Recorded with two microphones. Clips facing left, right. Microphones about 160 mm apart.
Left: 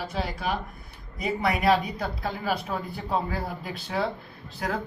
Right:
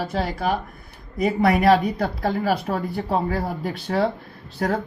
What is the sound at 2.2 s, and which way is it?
A woman's voice, 40° right (ahead or behind).